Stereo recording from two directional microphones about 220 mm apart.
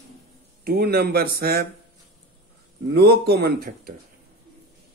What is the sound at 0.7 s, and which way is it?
A man's voice, 45° right (ahead or behind).